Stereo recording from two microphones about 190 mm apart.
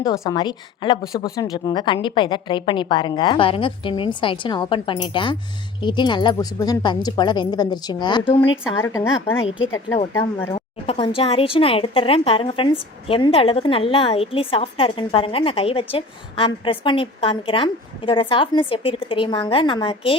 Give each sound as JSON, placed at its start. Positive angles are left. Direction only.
{"t": 0.0, "sound": "a woman's voice", "side_deg": 20}
{"t": 8.2, "sound": "speech", "side_deg": 10}
{"t": 10.8, "sound": "a woman's voice", "side_deg": 30}